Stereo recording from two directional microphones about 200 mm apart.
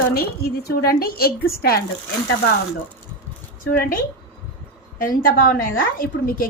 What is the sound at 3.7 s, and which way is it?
A woman's voice, 45° left (ahead or behind).